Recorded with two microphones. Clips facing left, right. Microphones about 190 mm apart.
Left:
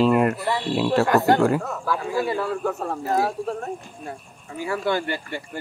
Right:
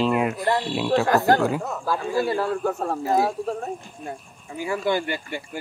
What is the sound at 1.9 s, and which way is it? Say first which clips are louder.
A man's voice: right 1 dB; 30° right (ahead or behind).